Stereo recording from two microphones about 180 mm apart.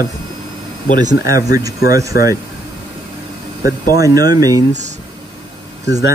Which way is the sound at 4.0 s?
20° right (ahead or behind).